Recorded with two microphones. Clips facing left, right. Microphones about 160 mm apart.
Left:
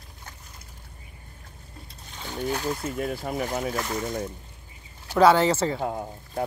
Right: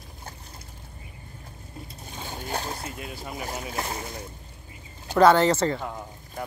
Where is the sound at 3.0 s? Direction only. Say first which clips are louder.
Left 7 dB; 50° left (ahead or behind).